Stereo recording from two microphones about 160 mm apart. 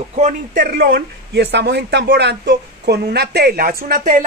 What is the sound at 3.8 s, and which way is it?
Speech, 55° right (ahead or behind).